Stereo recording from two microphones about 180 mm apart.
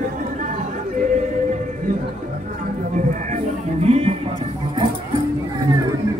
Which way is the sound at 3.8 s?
35° right (ahead or behind).